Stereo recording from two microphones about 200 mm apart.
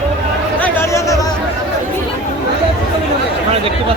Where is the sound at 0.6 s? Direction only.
15° left (ahead or behind).